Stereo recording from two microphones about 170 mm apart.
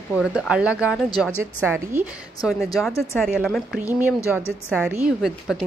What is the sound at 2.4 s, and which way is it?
Speech, centre (ahead or behind).